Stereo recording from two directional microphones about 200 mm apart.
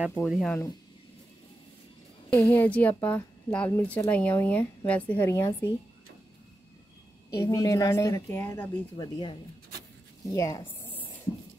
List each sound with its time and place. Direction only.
0.1 s speech: centre (ahead or behind)
2.3 s a woman's voice: 10° left (ahead or behind)
7.3 s a woman's voice: 20° left (ahead or behind)